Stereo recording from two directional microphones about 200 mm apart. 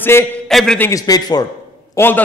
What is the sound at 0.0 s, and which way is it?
A man's voice, 10° left (ahead or behind).